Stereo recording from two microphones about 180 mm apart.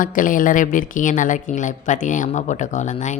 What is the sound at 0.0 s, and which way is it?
Speech, 50° left (ahead or behind).